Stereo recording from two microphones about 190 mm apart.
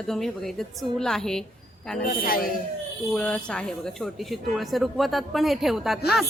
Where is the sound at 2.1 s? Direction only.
50° left (ahead or behind).